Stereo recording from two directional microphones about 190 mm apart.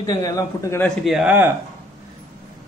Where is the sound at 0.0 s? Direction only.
20° left (ahead or behind).